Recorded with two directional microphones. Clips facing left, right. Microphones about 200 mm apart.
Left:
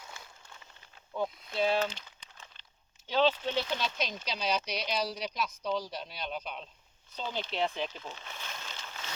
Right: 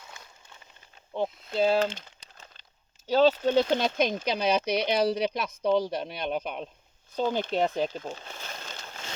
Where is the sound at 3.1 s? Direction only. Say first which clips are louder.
Right 7 dB; 40° right (ahead or behind).